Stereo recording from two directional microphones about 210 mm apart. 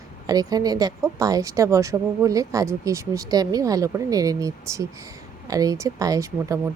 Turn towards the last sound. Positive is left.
turn(degrees=-15)  # may be behind; listen again after turning